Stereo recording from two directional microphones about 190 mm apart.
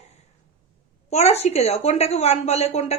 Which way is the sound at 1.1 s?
35° left (ahead or behind).